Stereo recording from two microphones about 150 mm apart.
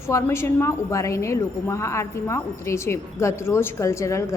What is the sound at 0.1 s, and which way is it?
A woman's voice, 20° left (ahead or behind).